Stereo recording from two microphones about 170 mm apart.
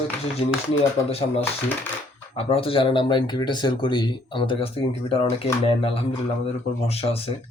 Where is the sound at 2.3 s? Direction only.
35° left (ahead or behind).